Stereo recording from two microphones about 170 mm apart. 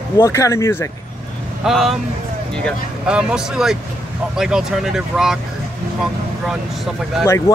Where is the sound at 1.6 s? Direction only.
Centre (ahead or behind).